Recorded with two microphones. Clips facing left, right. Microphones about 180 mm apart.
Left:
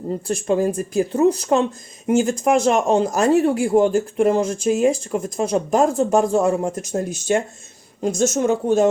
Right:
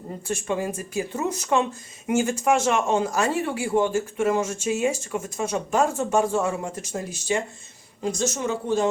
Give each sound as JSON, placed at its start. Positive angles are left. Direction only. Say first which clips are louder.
{"t": 0.3, "sound": "speech", "louder": "left 7 dB", "side_deg": 40}